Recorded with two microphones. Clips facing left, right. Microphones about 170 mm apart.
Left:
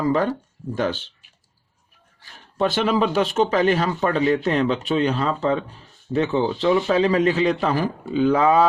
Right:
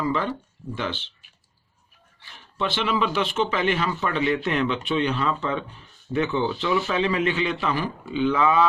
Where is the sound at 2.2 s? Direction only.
40° left (ahead or behind).